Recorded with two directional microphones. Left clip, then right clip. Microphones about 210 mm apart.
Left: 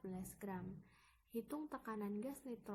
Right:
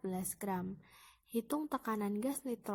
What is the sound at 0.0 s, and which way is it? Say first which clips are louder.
A woman's voice: right 10 dB; 45° right (ahead or behind).